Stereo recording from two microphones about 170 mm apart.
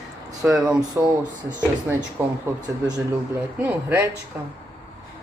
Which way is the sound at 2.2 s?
10° right (ahead or behind).